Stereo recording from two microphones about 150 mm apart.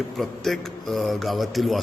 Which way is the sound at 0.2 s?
Centre (ahead or behind).